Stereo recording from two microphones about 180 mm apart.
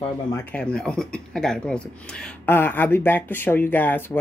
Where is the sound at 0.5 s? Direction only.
5° left (ahead or behind).